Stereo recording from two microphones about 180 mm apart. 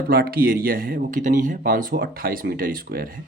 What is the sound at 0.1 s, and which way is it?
Speech, 55° right (ahead or behind).